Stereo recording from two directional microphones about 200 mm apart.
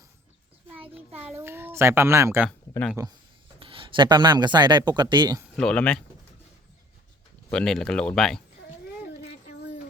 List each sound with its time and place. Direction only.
0.7 s a child's voice: 10° right (ahead or behind)
2.5 s speech: 5° left (ahead or behind)
2.9 s speech: 15° right (ahead or behind)
5.5 s speech: 5° left (ahead or behind)
7.5 s speech: 5° left (ahead or behind)